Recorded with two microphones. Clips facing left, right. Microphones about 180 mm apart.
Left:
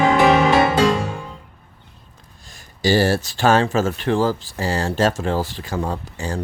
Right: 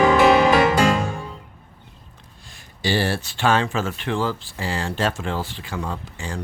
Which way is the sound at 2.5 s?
40° left (ahead or behind).